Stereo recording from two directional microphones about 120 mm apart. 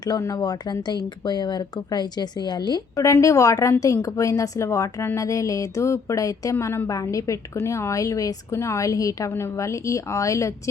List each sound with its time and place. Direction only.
0.0 s speech: 30° left (ahead or behind)